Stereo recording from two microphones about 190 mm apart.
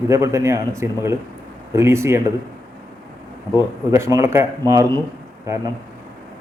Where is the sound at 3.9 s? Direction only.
15° right (ahead or behind).